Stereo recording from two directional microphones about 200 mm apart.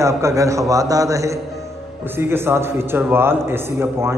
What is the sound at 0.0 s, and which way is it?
A man's voice, 15° right (ahead or behind).